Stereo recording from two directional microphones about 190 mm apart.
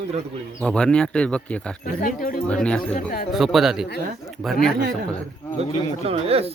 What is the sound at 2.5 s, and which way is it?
Speech, 5° left (ahead or behind).